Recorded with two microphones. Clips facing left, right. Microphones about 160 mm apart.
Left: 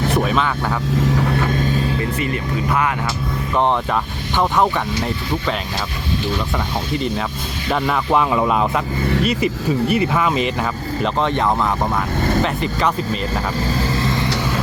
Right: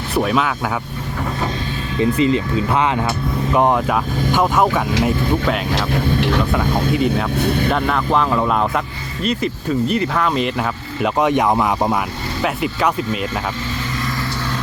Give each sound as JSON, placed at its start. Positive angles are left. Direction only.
{"t": 2.0, "sound": "speech", "side_deg": -25}
{"t": 3.5, "sound": "speech", "side_deg": -10}
{"t": 6.1, "sound": "speech", "side_deg": -80}
{"t": 6.5, "sound": "speech", "side_deg": -5}
{"t": 7.7, "sound": "speech", "side_deg": 5}
{"t": 11.0, "sound": "speech", "side_deg": -15}